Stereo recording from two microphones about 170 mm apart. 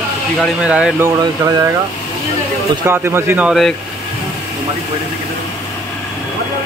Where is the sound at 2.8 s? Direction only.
15° right (ahead or behind).